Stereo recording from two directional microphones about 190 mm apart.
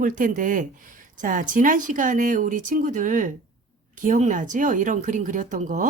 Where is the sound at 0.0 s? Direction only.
45° right (ahead or behind).